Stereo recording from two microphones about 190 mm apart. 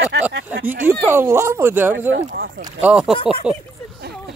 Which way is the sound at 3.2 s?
30° right (ahead or behind).